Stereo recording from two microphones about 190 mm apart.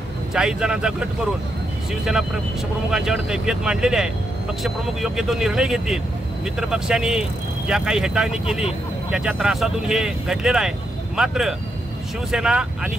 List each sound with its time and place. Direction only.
0.3 s speech: 5° right (ahead or behind)
2.9 s speech: 5° right (ahead or behind)